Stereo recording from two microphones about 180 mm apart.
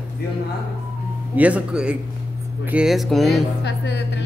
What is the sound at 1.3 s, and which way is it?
Speech, 5° right (ahead or behind).